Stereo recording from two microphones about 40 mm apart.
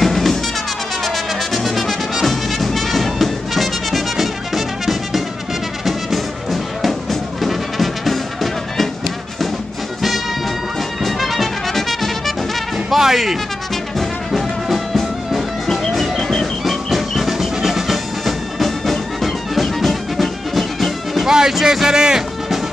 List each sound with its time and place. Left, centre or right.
0.0 s music: centre
1.0 s brass instrument: centre
2.2 s music: centre
11.1 s music: centre
13.9 s music: centre
21.3 s a sound: centre